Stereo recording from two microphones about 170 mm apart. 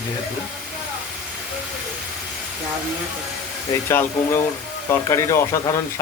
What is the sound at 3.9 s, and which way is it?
Speech, 15° left (ahead or behind).